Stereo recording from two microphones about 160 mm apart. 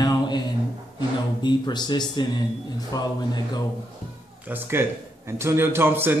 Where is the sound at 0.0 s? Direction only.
25° left (ahead or behind).